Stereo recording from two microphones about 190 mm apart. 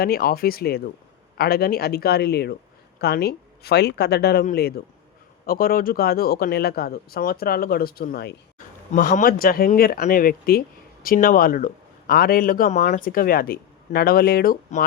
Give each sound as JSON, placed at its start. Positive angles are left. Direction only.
{"t": 0.0, "sound": "speech", "side_deg": 50}
{"t": 8.5, "sound": "speech", "side_deg": 45}